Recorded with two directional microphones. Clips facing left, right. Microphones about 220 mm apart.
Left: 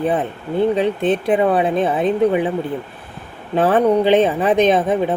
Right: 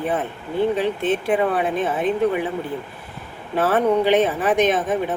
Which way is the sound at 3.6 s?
15° left (ahead or behind).